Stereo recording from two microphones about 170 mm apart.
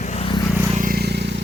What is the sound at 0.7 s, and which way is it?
Vehicle, 55° right (ahead or behind).